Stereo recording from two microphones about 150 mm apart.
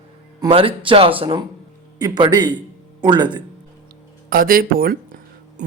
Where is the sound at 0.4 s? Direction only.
35° right (ahead or behind).